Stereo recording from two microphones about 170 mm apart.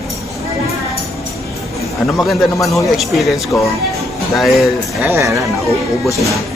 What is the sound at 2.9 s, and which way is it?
Speech, centre (ahead or behind).